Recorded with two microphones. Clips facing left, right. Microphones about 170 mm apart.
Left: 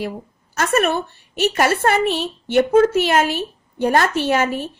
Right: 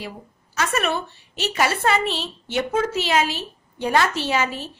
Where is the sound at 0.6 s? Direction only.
50° left (ahead or behind).